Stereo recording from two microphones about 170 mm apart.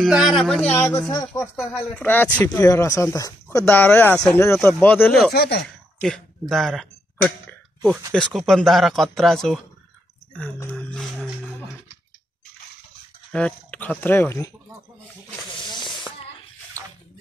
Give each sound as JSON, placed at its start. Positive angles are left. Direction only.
{"t": 0.0, "sound": "speech", "side_deg": 0}
{"t": 2.0, "sound": "speech", "side_deg": 10}
{"t": 5.3, "sound": "speech", "side_deg": 75}
{"t": 5.9, "sound": "speech", "side_deg": 5}
{"t": 10.3, "sound": "a sound", "side_deg": 10}
{"t": 13.3, "sound": "speech", "side_deg": 5}
{"t": 15.5, "sound": "snake", "side_deg": 25}